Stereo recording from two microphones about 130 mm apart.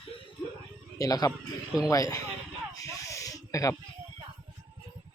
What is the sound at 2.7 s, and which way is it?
Snake, 25° left (ahead or behind).